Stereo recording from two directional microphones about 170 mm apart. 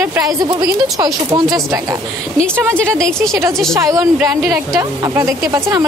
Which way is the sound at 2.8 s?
5° left (ahead or behind).